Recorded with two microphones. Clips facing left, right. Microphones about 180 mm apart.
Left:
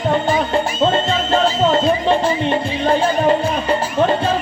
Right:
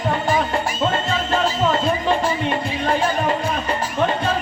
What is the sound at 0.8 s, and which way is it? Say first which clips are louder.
Music: left 5 dB; 25° left (ahead or behind).